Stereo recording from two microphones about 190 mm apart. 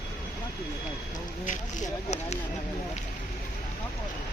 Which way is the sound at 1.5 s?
40° left (ahead or behind).